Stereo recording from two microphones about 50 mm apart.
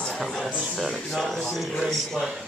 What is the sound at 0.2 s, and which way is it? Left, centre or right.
Speech, centre.